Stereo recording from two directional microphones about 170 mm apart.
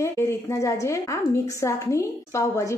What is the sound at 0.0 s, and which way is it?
A woman's voice, 20° left (ahead or behind).